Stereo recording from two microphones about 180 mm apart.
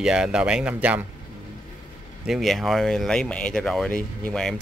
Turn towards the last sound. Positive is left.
turn(degrees=5)  # may be behind; listen again after turning